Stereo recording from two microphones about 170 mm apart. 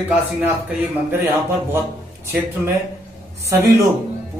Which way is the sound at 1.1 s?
15° right (ahead or behind).